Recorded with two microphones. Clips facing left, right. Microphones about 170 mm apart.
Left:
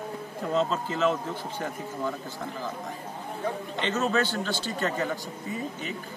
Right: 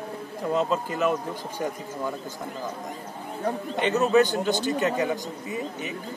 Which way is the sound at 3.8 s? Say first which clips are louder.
Right 6 dB; 15° right (ahead or behind).